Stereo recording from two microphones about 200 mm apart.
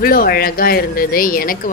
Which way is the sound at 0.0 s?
45° left (ahead or behind).